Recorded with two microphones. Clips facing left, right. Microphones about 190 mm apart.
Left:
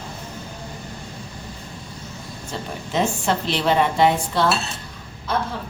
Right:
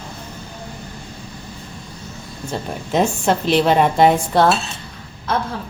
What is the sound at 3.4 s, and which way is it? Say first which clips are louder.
Speech: right 5 dB; 50° right (ahead or behind).